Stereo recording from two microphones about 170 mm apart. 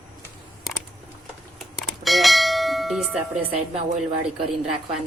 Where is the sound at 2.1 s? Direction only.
Centre (ahead or behind).